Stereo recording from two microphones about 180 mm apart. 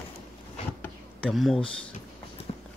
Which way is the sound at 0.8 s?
5° left (ahead or behind).